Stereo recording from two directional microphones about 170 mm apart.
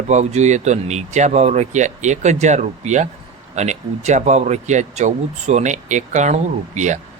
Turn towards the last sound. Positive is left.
turn(degrees=-45)  # may be behind; listen again after turning